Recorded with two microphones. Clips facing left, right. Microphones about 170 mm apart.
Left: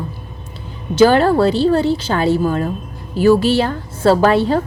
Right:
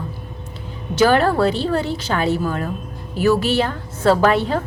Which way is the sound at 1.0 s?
30° left (ahead or behind).